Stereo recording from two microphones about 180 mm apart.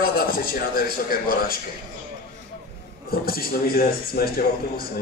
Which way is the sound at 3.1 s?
55° left (ahead or behind).